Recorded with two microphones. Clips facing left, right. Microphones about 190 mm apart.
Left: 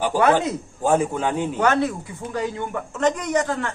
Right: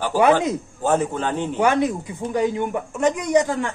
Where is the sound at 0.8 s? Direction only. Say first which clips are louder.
Left 1 dB; 10° left (ahead or behind).